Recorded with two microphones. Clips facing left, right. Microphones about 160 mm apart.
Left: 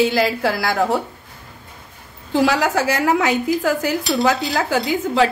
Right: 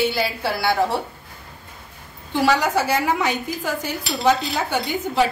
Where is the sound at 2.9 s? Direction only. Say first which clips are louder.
Left 3 dB; 90° left.